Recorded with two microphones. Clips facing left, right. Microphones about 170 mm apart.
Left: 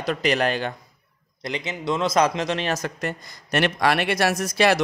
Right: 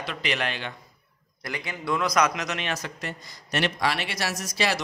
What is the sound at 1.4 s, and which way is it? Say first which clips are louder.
A man's voice: left 4 dB; 20° left (ahead or behind).